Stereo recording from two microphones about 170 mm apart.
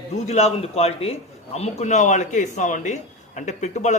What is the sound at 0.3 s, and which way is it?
A man's voice, 40° left (ahead or behind).